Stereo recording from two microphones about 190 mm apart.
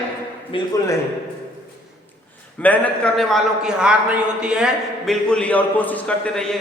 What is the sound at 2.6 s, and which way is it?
A man's voice, 10° left (ahead or behind).